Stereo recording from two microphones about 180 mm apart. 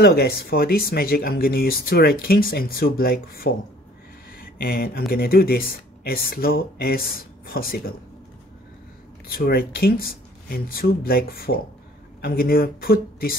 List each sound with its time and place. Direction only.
0.0 s speech: 60° left (ahead or behind)
4.6 s speech: 55° left (ahead or behind)
9.3 s speech: 60° left (ahead or behind)